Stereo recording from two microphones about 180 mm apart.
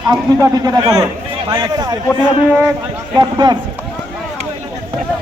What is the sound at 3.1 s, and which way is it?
Speech, 20° right (ahead or behind).